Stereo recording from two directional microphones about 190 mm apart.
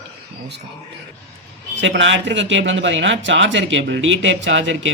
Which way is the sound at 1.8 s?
75° right (ahead or behind).